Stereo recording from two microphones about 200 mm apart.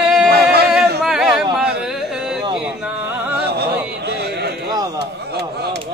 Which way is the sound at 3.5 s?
55° right (ahead or behind).